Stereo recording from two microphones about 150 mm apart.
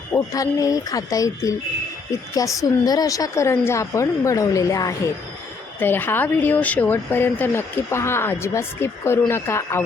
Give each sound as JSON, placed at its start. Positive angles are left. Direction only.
{"t": 0.1, "sound": "a woman's voice", "side_deg": 20}